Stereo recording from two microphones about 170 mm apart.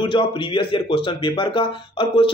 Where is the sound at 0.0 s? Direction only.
30° left (ahead or behind).